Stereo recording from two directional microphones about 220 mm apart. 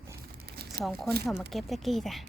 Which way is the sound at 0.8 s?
Centre (ahead or behind).